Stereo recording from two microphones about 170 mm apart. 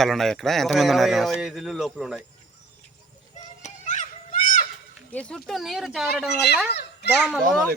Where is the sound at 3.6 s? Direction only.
45° left (ahead or behind).